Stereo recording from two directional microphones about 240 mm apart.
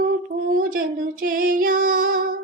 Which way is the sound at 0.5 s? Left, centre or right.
Right.